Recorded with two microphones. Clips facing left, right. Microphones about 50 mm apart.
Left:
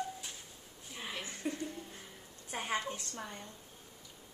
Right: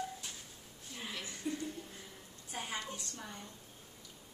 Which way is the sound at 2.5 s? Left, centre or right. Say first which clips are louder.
Left 5 dB; left.